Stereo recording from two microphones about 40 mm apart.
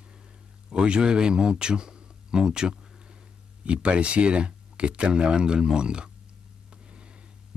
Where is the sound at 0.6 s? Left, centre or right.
Right.